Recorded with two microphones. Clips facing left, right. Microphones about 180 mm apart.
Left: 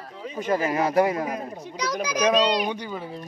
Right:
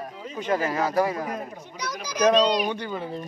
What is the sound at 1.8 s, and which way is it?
Speech, 80° left.